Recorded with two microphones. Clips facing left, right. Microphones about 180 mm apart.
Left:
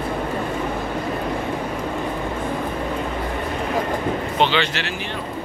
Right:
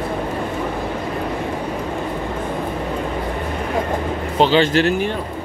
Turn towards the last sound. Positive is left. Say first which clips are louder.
# right 6 dB
turn(degrees=-40)  # may be behind; listen again after turning